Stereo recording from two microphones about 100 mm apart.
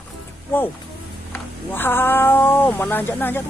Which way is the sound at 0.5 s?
20° left (ahead or behind).